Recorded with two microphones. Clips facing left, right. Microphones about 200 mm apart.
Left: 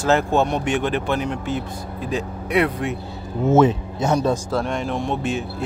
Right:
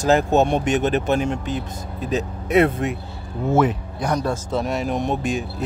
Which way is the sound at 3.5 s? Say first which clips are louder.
Left 3 dB; 25° left (ahead or behind).